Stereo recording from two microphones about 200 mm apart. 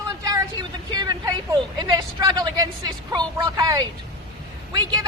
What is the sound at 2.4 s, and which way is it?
A woman's voice, 20° right (ahead or behind).